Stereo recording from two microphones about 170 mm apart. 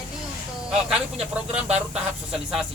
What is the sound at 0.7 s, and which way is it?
Speech, 5° right (ahead or behind).